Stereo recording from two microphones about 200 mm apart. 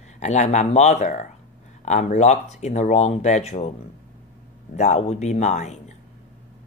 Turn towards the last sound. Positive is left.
turn(degrees=35)  # may be behind; listen again after turning